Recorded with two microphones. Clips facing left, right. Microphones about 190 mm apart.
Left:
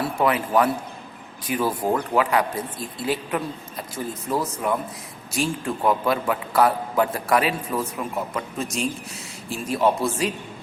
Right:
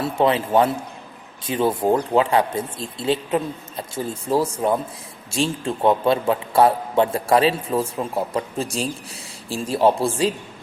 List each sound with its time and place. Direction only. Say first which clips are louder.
0.0 s a man's voice: right 3 dB; 25° right (ahead or behind)